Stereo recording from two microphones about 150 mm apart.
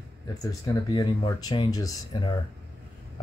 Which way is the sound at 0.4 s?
25° left (ahead or behind).